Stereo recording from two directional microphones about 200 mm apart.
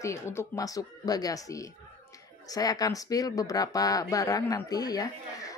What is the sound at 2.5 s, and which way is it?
A woman's voice, 20° left (ahead or behind).